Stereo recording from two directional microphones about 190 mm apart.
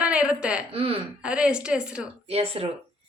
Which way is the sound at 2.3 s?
30° right (ahead or behind).